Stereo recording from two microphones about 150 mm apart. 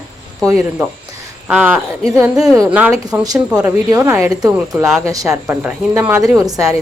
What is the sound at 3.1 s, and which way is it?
A woman's voice, 15° right (ahead or behind).